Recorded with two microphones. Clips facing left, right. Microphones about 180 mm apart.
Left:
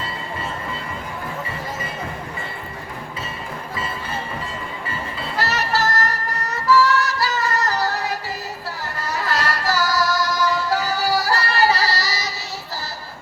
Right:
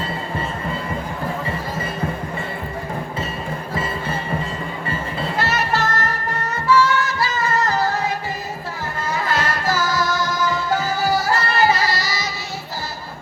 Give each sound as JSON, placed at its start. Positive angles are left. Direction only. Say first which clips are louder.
{"t": 5.4, "sound": "music", "louder": "even", "side_deg": 40}